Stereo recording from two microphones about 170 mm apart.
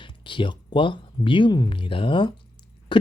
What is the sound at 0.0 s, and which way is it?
Speech, 30° left (ahead or behind).